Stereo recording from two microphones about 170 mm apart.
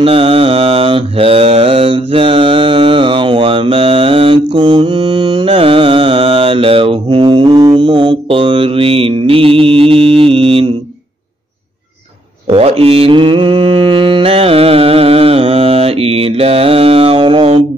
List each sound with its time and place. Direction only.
0.0 s mantra: 35° right (ahead or behind)
12.4 s mantra: 35° right (ahead or behind)